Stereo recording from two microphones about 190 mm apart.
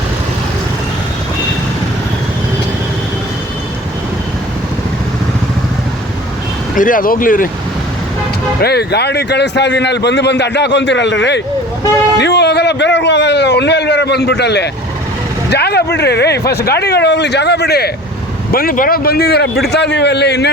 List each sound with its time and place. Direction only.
6.7 s speech: 45° left (ahead or behind)
8.6 s a man's voice: 60° left (ahead or behind)